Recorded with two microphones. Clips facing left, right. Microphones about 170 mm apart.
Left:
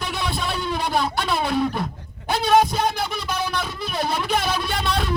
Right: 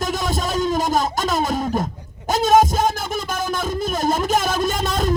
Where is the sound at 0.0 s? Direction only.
45° right (ahead or behind).